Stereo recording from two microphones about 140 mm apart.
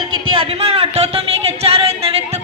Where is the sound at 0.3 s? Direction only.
45° right (ahead or behind).